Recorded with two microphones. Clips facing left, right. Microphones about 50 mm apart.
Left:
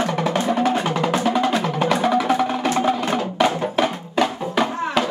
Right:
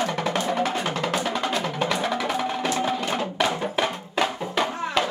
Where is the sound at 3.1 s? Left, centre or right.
Centre.